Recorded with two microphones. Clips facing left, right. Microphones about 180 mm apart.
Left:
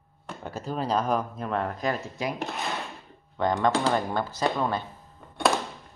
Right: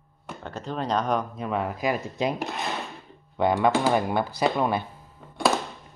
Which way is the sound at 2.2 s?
20° right (ahead or behind).